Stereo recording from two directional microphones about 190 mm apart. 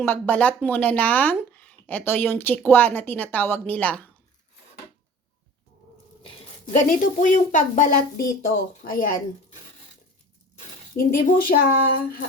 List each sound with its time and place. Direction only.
0.0 s speech: 10° left (ahead or behind)
6.7 s a woman's voice: 40° left (ahead or behind)
10.9 s a woman's voice: 50° left (ahead or behind)